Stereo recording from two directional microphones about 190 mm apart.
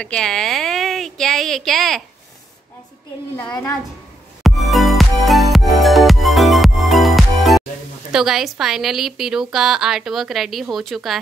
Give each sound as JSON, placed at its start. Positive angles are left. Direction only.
{"t": 0.0, "sound": "a woman's voice", "side_deg": 5}
{"t": 3.4, "sound": "a woman's voice", "side_deg": 20}
{"t": 4.4, "sound": "music", "side_deg": 0}
{"t": 8.1, "sound": "a woman's voice", "side_deg": 0}